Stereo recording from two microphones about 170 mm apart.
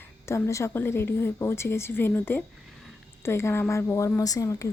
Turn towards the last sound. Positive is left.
turn(degrees=20)  # may be behind; listen again after turning